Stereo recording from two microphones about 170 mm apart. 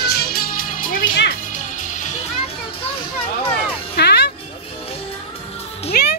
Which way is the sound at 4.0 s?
75° left (ahead or behind).